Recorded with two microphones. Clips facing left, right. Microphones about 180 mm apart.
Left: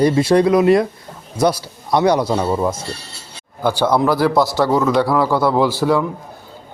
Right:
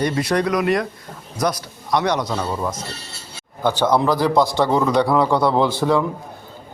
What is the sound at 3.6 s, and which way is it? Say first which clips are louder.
A man's voice: left 2 dB; 10° left (ahead or behind).